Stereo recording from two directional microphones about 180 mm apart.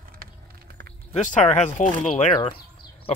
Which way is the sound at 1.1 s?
40° left (ahead or behind).